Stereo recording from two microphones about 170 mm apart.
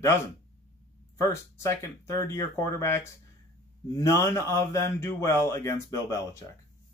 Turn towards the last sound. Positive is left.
turn(degrees=20)  # may be behind; listen again after turning